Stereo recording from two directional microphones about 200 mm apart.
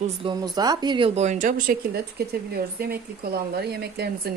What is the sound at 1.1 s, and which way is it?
A woman's voice, 35° right (ahead or behind).